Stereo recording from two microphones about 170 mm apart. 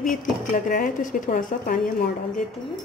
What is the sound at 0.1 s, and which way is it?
Speech, 55° left (ahead or behind).